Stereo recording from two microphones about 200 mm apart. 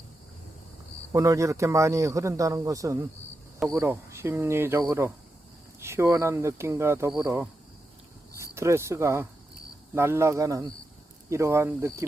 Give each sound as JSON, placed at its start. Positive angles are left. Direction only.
{"t": 1.1, "sound": "speech", "side_deg": -15}
{"t": 8.5, "sound": "speech", "side_deg": -15}